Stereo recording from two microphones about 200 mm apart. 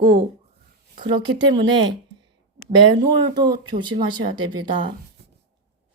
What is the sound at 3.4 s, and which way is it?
Speech, 20° right (ahead or behind).